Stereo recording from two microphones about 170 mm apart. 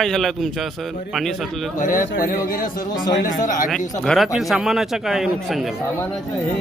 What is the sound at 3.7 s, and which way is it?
Speech, centre (ahead or behind).